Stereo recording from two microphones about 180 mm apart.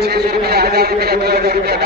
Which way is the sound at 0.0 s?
65° right (ahead or behind).